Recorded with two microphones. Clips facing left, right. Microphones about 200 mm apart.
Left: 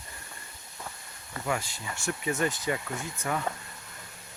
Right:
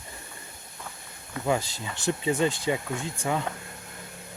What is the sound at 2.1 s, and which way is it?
Speech, 15° right (ahead or behind).